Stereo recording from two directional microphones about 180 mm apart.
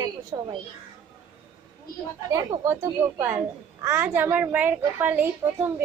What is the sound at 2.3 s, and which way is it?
A child's voice, 15° right (ahead or behind).